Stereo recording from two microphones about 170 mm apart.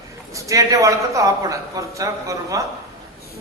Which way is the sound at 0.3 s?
20° right (ahead or behind).